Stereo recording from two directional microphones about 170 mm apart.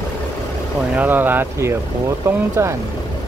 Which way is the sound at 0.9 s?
10° right (ahead or behind).